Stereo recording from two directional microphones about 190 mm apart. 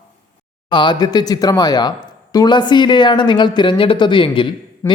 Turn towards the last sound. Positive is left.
turn(degrees=15)  # may be behind; listen again after turning